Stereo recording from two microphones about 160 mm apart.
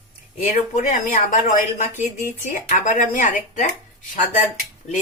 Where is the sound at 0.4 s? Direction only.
50° left (ahead or behind).